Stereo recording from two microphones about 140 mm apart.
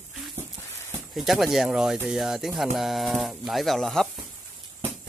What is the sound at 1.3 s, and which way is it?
Speech, centre (ahead or behind).